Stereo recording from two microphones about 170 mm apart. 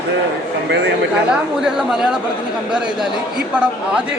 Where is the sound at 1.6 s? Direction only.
5° right (ahead or behind).